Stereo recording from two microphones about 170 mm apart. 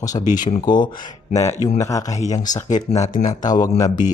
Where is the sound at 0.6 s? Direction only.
25° left (ahead or behind).